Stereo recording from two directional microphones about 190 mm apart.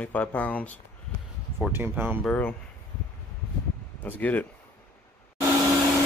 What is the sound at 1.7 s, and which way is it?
Speech, 10° right (ahead or behind).